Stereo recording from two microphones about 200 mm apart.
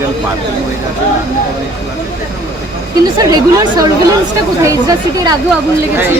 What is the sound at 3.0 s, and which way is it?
A woman's voice, 20° right (ahead or behind).